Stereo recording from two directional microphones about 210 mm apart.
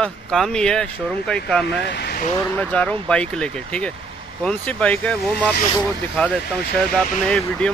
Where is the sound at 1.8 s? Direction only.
50° left (ahead or behind).